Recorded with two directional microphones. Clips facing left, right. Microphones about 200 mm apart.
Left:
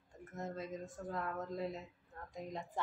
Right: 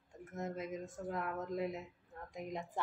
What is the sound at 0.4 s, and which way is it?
A woman's voice, 20° right (ahead or behind).